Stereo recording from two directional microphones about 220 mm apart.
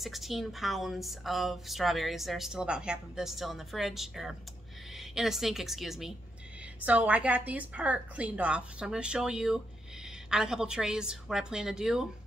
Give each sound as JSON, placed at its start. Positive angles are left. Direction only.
{"t": 0.0, "sound": "a woman's voice", "side_deg": 0}